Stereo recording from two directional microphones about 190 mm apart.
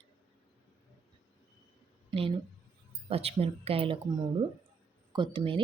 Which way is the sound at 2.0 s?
30° right (ahead or behind).